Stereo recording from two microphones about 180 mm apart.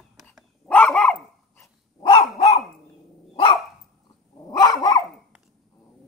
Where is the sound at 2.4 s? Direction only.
35° left (ahead or behind).